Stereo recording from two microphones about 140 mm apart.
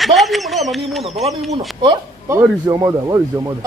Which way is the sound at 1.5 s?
35° right (ahead or behind).